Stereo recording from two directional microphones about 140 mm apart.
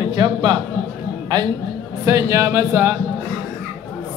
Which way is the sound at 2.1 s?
20° right (ahead or behind).